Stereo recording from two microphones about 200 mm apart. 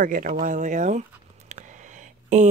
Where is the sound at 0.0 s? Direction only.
40° right (ahead or behind).